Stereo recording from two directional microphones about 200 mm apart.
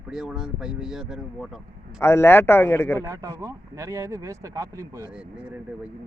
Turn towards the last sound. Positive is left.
turn(degrees=-15)  # may be behind; listen again after turning